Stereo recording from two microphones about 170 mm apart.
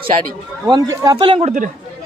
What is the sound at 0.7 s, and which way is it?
Speech, 20° right (ahead or behind).